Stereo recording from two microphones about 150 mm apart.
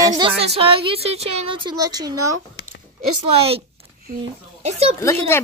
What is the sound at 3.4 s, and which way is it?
A woman's voice, 40° right (ahead or behind).